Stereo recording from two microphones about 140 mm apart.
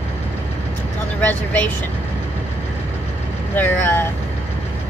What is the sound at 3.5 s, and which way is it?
Speech, 15° left (ahead or behind).